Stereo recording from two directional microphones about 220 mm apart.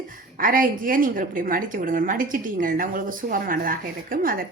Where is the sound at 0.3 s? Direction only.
40° right (ahead or behind).